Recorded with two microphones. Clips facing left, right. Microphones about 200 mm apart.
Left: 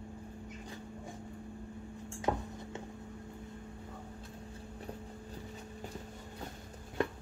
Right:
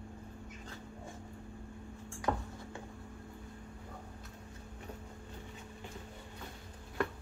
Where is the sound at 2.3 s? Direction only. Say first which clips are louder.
Left 1 dB; 15° left (ahead or behind).